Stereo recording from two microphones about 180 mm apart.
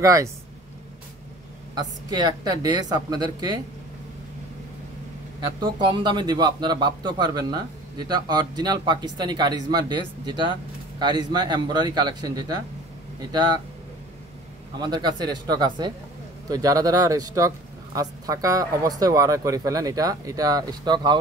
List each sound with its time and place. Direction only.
0.0 s speech: 20° right (ahead or behind)
1.8 s speech: 25° right (ahead or behind)
5.4 s speech: 25° right (ahead or behind)
14.8 s speech: 25° right (ahead or behind)